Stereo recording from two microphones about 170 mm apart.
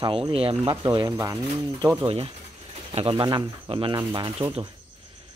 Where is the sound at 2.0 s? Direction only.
30° right (ahead or behind).